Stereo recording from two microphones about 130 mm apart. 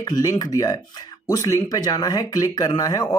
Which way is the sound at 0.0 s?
25° left (ahead or behind).